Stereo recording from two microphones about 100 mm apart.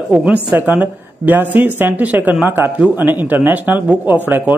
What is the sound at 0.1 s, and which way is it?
A woman's voice, 15° right (ahead or behind).